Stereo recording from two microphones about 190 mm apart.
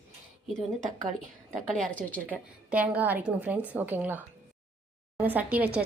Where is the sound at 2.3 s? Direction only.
10° right (ahead or behind).